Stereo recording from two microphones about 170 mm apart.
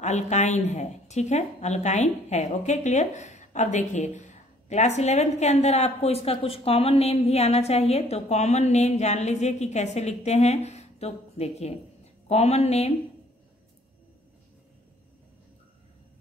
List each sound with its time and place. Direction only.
0.0 s a woman's voice: 45° left (ahead or behind)